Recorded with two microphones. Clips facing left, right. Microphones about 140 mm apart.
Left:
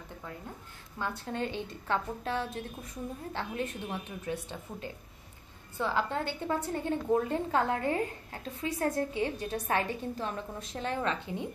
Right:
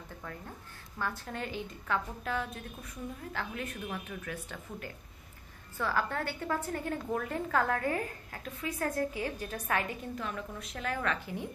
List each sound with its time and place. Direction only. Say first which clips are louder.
0.9 s a woman's voice: left 2 dB; 20° left (ahead or behind)